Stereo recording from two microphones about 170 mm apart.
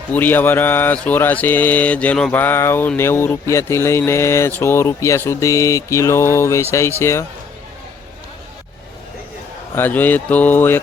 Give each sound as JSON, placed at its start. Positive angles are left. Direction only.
{"t": 0.1, "sound": "mantra", "side_deg": 10}
{"t": 9.7, "sound": "mantra", "side_deg": 10}